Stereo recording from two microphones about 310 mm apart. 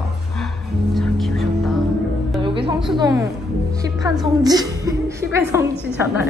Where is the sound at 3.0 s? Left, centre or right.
Centre.